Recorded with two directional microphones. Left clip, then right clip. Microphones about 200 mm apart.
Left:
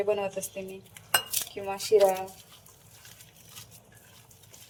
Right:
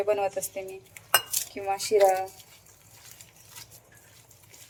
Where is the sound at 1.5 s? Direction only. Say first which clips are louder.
Right 8 dB; 15° right (ahead or behind).